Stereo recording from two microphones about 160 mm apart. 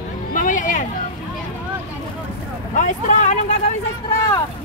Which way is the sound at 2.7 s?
50° left (ahead or behind).